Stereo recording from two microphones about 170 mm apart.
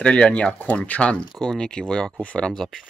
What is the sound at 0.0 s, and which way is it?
Speech, 5° left (ahead or behind).